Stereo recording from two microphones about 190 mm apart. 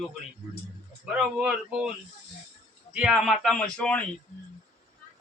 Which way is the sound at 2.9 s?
5° right (ahead or behind).